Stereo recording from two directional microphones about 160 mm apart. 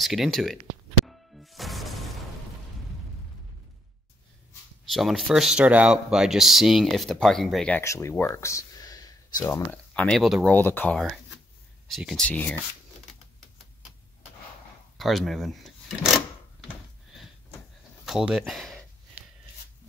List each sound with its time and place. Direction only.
0.0 s speech: centre (ahead or behind)
1.0 s music: centre (ahead or behind)
4.8 s speech: centre (ahead or behind)
7.8 s speech: 20° left (ahead or behind)
9.5 s speech: 5° left (ahead or behind)
10.5 s speech: 10° left (ahead or behind)
11.9 s speech: centre (ahead or behind)
15.0 s speech: centre (ahead or behind)
18.0 s speech: centre (ahead or behind)